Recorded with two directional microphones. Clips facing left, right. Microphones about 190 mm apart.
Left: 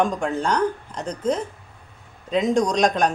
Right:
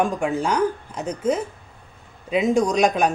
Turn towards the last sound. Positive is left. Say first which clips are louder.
# right 1 dB
turn(degrees=-5)  # may be behind; listen again after turning